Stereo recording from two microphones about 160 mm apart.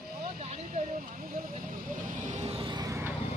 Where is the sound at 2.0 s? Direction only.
50° right (ahead or behind); by 3.1 s 15° right (ahead or behind).